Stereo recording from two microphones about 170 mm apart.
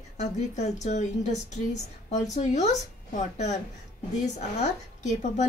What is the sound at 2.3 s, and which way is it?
A woman's voice, 40° left (ahead or behind).